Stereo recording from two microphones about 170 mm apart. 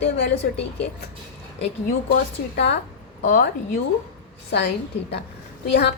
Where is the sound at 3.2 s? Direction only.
55° left (ahead or behind).